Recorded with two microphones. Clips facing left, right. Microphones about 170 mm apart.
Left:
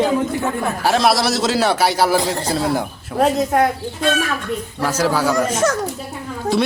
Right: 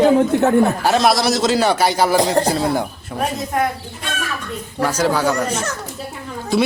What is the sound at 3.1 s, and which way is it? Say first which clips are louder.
Speech: left 5 dB; 70° left (ahead or behind).